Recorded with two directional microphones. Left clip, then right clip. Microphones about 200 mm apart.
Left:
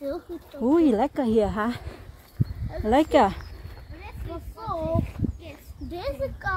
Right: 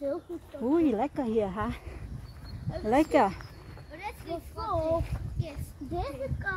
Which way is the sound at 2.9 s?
15° left (ahead or behind).